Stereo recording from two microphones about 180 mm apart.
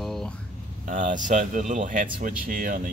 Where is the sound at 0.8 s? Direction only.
45° right (ahead or behind).